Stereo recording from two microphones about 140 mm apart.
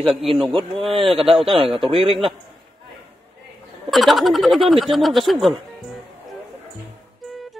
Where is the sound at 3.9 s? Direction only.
Centre (ahead or behind).